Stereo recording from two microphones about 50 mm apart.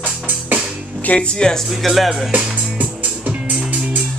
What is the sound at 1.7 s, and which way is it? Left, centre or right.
Speech, centre.